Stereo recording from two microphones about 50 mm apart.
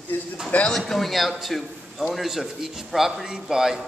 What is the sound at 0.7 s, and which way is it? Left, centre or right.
A man's voice, centre.